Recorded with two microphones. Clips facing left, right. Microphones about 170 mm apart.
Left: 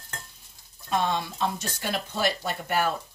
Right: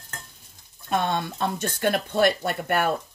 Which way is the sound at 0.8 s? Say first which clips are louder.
Right 2 dB; 55° right (ahead or behind).